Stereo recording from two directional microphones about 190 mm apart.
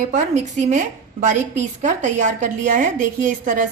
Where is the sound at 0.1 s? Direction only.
40° right (ahead or behind).